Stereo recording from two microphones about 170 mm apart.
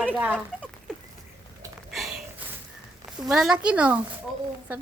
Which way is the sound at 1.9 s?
Centre (ahead or behind).